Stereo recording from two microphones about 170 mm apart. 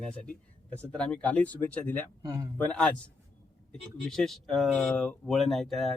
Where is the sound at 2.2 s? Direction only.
20° right (ahead or behind).